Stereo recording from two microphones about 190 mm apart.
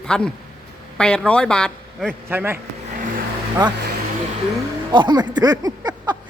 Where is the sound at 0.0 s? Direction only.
5° left (ahead or behind).